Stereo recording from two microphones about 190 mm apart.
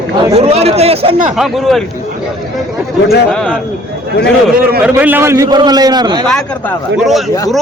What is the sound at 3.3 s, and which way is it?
Speech, 5° left (ahead or behind).